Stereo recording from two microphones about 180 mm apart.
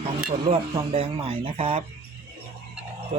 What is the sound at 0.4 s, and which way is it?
Speech, 30° right (ahead or behind).